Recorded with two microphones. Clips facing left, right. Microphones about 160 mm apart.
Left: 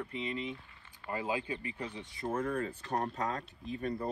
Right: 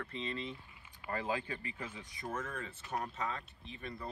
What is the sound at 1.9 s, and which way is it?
Speech, 30° left (ahead or behind).